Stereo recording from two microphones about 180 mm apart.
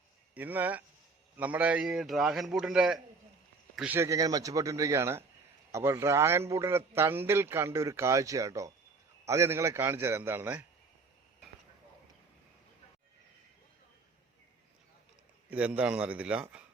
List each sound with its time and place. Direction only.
0.3 s a man's voice: 10° right (ahead or behind)
15.4 s a man's voice: 5° right (ahead or behind)